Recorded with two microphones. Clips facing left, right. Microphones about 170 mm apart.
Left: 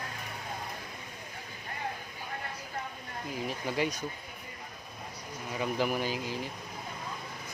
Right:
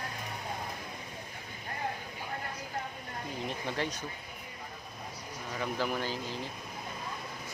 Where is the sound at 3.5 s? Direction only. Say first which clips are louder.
Left 4 dB; 10° left (ahead or behind).